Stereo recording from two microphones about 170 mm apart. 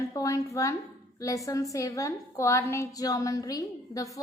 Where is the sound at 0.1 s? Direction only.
20° left (ahead or behind).